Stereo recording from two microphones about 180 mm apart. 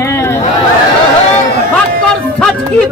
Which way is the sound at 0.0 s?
15° left (ahead or behind).